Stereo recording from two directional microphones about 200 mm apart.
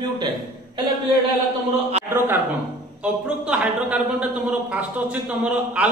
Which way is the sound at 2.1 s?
10° right (ahead or behind).